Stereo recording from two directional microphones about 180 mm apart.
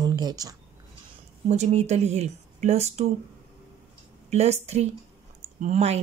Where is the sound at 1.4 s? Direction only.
40° right (ahead or behind).